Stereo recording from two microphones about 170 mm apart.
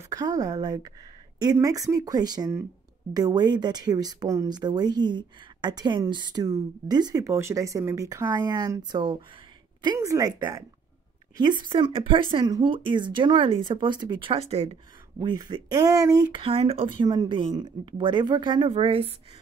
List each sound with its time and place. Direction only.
0.1 s speech: 20° right (ahead or behind)